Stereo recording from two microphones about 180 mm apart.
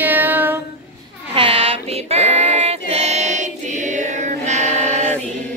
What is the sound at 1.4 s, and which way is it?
Child singing, 30° right (ahead or behind).